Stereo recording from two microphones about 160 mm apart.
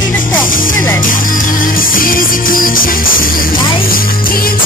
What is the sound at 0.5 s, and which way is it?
Music, 60° left (ahead or behind).